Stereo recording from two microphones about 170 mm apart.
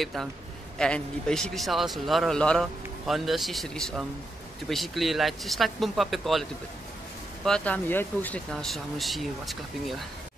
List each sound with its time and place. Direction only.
0.0 s a man's voice: centre (ahead or behind)
7.4 s a man's voice: 5° left (ahead or behind)